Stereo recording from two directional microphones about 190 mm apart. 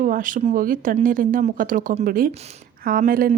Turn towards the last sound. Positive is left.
turn(degrees=-50)  # may be behind; listen again after turning